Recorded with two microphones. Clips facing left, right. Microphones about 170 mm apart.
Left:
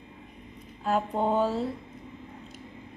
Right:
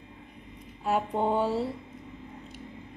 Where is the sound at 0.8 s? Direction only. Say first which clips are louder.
Even; 5° right (ahead or behind).